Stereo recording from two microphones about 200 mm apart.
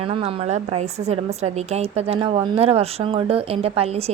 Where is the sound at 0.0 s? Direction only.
30° right (ahead or behind).